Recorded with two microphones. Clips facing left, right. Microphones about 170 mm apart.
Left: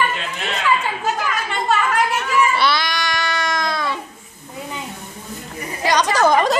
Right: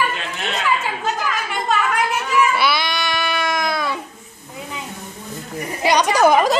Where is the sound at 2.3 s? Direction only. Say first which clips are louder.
Even; 5° right (ahead or behind).